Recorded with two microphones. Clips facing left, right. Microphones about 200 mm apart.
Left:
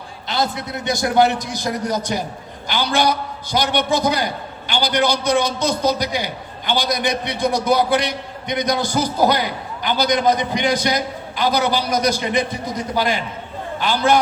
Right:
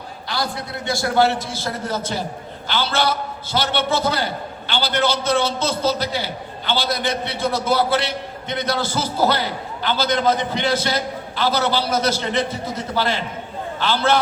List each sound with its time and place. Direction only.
0.3 s a man's voice: 20° left (ahead or behind)